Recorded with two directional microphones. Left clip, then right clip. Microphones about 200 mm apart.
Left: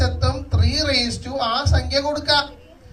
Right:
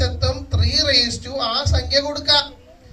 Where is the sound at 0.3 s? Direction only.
15° right (ahead or behind).